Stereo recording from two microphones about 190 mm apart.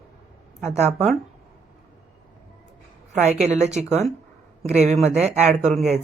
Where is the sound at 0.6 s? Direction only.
35° right (ahead or behind).